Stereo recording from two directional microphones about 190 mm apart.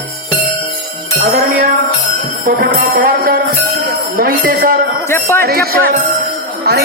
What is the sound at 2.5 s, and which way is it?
Music, 50° right (ahead or behind).